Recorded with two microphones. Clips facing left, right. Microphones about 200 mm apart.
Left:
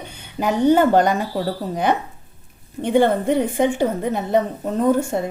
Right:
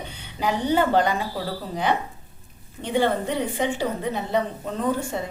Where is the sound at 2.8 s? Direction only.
55° left (ahead or behind).